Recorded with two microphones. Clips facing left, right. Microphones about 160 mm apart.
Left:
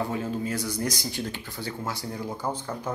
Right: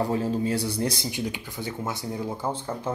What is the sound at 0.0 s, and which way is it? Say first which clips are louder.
Speech: right 4 dB; 35° right (ahead or behind).